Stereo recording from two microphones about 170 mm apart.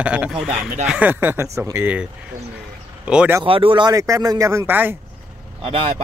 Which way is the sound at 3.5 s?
30° right (ahead or behind).